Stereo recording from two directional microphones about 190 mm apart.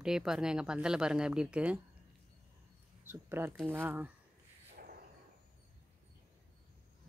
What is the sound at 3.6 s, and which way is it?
Speech, 10° right (ahead or behind).